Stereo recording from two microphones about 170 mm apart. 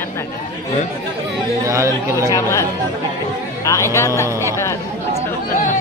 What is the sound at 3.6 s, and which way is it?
Music, 15° left (ahead or behind).